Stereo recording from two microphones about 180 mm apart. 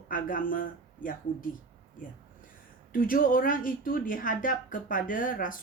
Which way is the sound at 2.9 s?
50° left (ahead or behind).